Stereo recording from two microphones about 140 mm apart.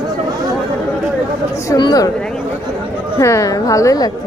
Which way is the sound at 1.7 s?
30° left (ahead or behind).